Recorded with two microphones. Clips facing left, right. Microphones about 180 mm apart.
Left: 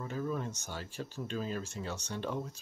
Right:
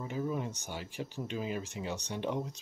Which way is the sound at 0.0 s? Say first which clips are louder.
Right 1 dB; 15° right (ahead or behind).